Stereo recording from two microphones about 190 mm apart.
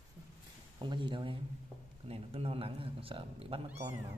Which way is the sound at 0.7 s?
25° right (ahead or behind).